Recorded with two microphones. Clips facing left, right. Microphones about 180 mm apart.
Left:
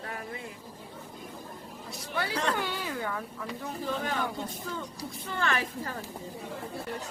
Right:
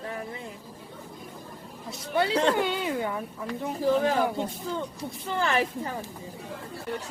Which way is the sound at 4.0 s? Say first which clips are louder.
Right 7 dB; 35° right (ahead or behind).